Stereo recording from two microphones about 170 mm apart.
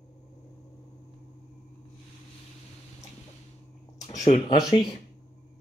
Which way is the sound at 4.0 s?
45° left (ahead or behind).